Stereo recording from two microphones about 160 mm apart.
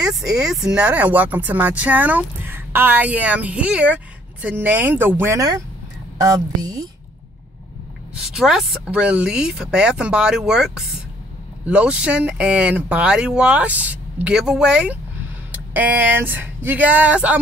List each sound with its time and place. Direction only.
0.0 s speech: 5° right (ahead or behind); by 6.9 s 25° right (ahead or behind)
8.1 s speech: 5° right (ahead or behind)